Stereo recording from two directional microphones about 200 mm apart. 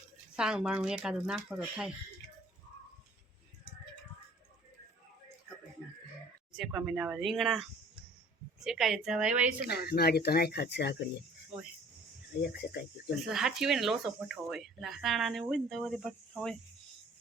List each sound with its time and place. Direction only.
0.3 s speech: 5° right (ahead or behind)
6.5 s speech: centre (ahead or behind)
8.6 s speech: centre (ahead or behind)
9.6 s speech: 50° left (ahead or behind)
12.4 s speech: 50° left (ahead or behind)
13.3 s speech: centre (ahead or behind)